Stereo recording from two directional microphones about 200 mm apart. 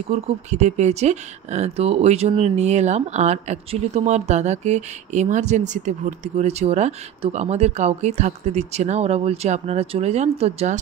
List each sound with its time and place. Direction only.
0.1 s speech: 35° right (ahead or behind)